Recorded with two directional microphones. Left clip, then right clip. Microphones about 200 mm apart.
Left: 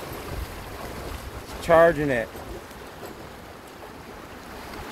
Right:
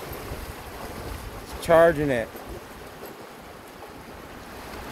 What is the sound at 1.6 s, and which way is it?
Speech, 15° right (ahead or behind).